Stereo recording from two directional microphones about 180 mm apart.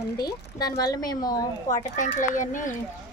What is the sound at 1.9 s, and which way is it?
Speech, 45° left (ahead or behind).